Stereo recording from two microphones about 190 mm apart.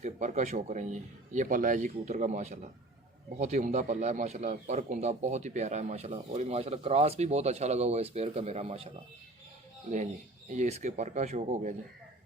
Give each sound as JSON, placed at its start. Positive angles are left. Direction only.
{"t": 0.0, "sound": "a man's voice", "side_deg": -35}
{"t": 10.5, "sound": "a man's voice", "side_deg": -35}